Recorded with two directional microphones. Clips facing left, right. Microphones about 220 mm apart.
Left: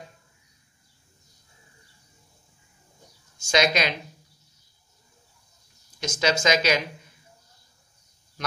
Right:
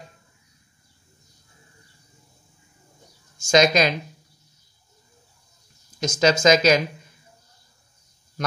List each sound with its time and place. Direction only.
3.4 s speech: 40° right (ahead or behind)
5.9 s speech: 40° right (ahead or behind)